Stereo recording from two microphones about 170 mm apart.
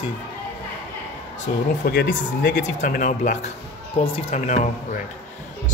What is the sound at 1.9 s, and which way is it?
Speech, 60° left (ahead or behind).